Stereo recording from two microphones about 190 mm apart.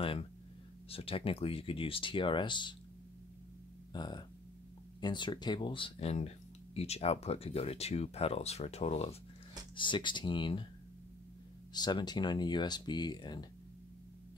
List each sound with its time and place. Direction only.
0.0 s speech: 30° left (ahead or behind)
3.9 s speech: 20° left (ahead or behind)
11.7 s speech: 20° left (ahead or behind)